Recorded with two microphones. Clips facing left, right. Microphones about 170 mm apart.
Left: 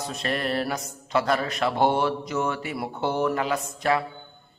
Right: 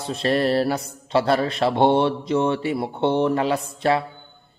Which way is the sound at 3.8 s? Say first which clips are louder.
Right 3 dB; 30° right (ahead or behind).